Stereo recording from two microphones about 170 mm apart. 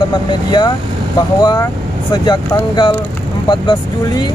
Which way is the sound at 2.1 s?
25° left (ahead or behind).